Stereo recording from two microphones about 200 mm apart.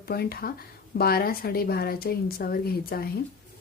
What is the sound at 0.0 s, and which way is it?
Speech, 50° left (ahead or behind).